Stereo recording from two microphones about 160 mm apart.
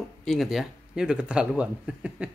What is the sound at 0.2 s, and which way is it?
Speech, centre (ahead or behind).